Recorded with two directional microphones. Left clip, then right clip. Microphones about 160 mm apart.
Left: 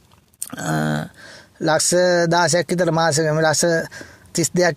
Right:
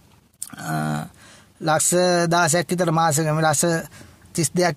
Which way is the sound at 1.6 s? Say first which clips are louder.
Left 3 dB; 30° left (ahead or behind).